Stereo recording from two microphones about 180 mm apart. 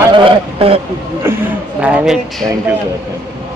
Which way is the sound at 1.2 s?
10° right (ahead or behind).